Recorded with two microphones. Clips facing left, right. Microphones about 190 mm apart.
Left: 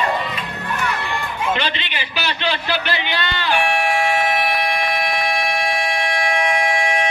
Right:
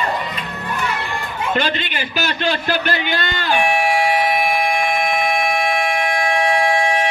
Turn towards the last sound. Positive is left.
turn(degrees=-30)  # may be behind; listen again after turning